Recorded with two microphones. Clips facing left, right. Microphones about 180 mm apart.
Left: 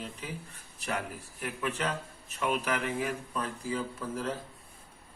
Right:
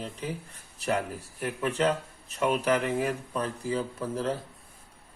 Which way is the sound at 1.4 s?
40° right (ahead or behind).